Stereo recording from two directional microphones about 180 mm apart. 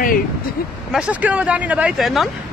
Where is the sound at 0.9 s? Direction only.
5° right (ahead or behind).